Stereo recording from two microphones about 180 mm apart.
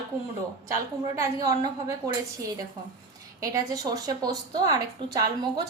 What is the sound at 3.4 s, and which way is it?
A woman's voice, 20° right (ahead or behind).